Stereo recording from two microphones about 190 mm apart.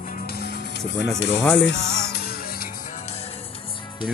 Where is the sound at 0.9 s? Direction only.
70° left (ahead or behind).